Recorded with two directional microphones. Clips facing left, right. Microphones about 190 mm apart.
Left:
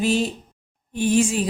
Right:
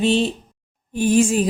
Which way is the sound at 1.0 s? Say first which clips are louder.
Right 3 dB; 45° right (ahead or behind).